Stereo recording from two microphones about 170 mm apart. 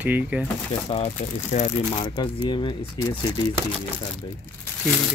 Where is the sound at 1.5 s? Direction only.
40° left (ahead or behind).